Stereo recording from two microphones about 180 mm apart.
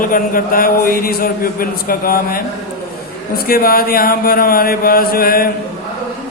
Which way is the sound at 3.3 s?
55° left (ahead or behind).